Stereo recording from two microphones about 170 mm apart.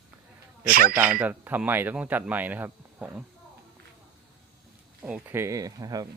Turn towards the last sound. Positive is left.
turn(degrees=-20)  # may be behind; listen again after turning